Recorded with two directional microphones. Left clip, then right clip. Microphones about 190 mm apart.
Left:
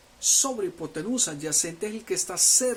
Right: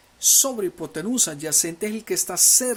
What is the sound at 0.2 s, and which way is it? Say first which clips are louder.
Speech: right 4 dB; 40° right (ahead or behind).